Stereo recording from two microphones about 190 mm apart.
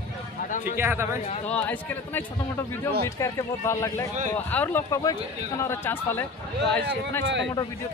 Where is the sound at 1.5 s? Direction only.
10° left (ahead or behind).